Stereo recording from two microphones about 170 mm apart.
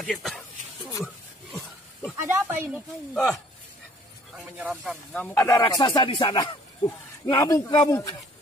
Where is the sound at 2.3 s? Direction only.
10° right (ahead or behind).